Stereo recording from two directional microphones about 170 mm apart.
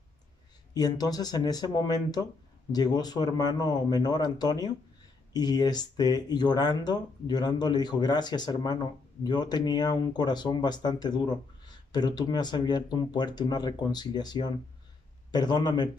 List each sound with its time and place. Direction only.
0.7 s speech: 25° left (ahead or behind)